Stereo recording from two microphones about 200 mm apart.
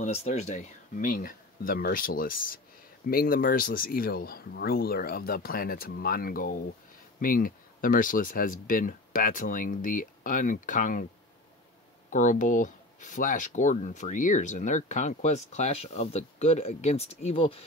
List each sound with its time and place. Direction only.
0.0 s speech: 35° left (ahead or behind)
12.1 s speech: 40° left (ahead or behind)